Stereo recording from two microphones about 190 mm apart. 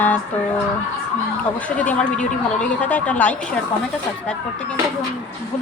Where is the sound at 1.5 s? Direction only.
5° left (ahead or behind).